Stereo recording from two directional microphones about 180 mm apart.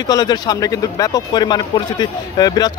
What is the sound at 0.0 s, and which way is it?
A man's voice, 20° left (ahead or behind).